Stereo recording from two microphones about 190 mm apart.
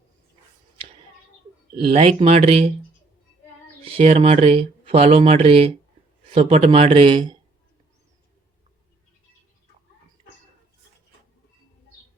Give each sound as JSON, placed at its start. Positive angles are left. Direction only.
{"t": 1.7, "sound": "speech", "side_deg": -30}
{"t": 3.8, "sound": "speech", "side_deg": -30}